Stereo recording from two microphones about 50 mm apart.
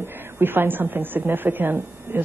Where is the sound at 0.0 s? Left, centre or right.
Right.